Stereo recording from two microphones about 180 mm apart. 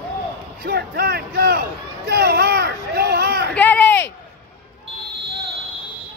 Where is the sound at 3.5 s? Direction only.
10° left (ahead or behind).